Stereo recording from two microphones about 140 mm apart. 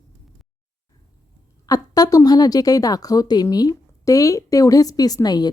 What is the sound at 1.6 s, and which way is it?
A woman's voice, 25° left (ahead or behind).